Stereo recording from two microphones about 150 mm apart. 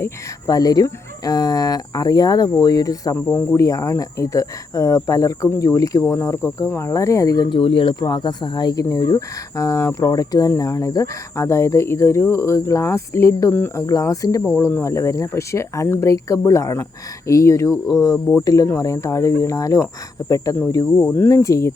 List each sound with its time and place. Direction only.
0.0 s speech: 25° left (ahead or behind)